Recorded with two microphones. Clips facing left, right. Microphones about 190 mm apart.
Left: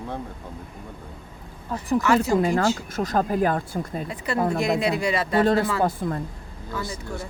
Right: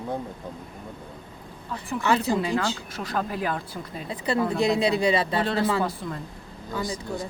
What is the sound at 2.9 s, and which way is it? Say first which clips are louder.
Speech: left 6 dB; 45° left (ahead or behind).